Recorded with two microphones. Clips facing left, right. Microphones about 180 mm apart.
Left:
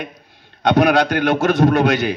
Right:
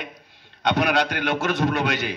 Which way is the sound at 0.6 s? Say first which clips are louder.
Left 7 dB; 45° left (ahead or behind).